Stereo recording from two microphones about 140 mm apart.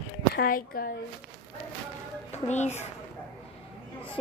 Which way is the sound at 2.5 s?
55° left (ahead or behind).